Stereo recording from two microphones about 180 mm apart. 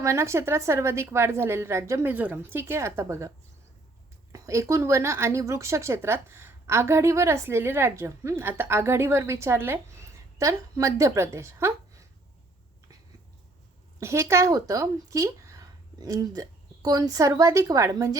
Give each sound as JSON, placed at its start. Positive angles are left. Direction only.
{"t": 0.0, "sound": "a woman's voice", "side_deg": -15}
{"t": 14.0, "sound": "speech", "side_deg": -15}